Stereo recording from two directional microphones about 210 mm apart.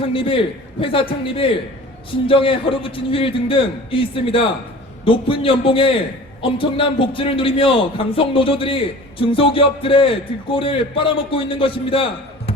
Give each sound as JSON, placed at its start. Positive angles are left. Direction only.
{"t": 0.1, "sound": "a man's voice", "side_deg": 25}